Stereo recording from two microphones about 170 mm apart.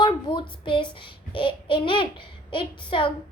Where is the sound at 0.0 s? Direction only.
30° left (ahead or behind).